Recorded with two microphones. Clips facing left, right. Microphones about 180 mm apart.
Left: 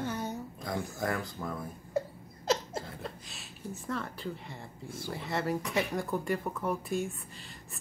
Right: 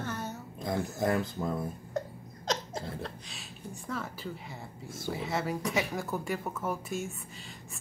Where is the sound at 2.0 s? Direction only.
10° left (ahead or behind).